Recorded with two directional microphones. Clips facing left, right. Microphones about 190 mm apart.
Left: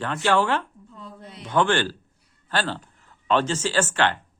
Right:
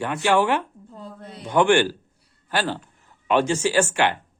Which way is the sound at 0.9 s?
35° right (ahead or behind).